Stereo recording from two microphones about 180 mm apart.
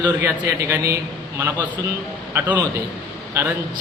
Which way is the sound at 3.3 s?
10° right (ahead or behind).